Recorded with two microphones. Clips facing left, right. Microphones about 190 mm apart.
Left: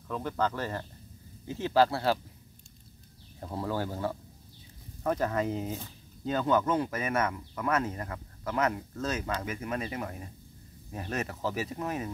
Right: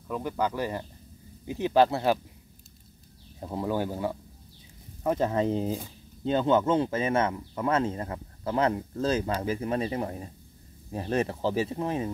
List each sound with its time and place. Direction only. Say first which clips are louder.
0.1 s speech: right 2 dB; 10° right (ahead or behind)
3.3 s speech: right 4 dB; 15° right (ahead or behind)